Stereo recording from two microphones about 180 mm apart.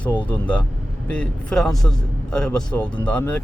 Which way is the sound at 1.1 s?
5° left (ahead or behind).